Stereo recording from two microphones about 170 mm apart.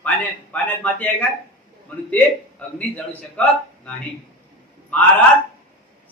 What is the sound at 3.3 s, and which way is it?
Speech, 10° left (ahead or behind).